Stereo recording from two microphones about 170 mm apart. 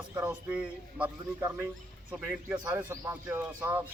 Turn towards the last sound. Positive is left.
turn(degrees=-15)  # may be behind; listen again after turning